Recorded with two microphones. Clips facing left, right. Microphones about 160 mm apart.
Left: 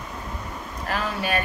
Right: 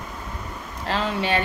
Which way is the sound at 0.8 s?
25° right (ahead or behind).